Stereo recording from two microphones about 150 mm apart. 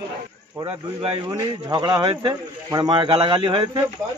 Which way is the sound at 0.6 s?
35° right (ahead or behind).